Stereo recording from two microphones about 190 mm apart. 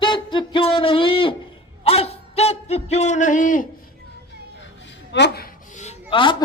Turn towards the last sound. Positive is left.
turn(degrees=25)  # may be behind; listen again after turning